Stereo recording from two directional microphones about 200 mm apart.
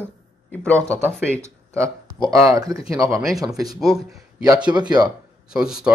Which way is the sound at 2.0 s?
20° right (ahead or behind).